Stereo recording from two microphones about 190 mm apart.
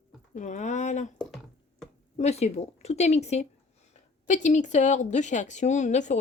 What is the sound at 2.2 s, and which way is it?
Speech, 35° left (ahead or behind).